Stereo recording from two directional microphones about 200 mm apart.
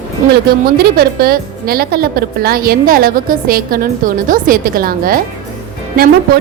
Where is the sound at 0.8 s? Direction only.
50° right (ahead or behind).